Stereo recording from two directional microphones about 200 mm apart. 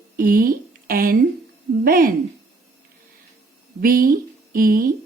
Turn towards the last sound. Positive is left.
turn(degrees=-45)  # may be behind; listen again after turning